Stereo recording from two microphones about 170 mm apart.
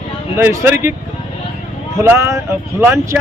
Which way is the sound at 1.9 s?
15° right (ahead or behind).